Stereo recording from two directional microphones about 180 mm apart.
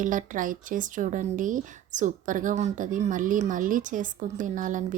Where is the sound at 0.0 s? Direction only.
45° right (ahead or behind).